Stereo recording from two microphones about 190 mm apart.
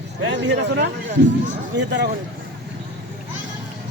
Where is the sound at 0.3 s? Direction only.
70° right (ahead or behind).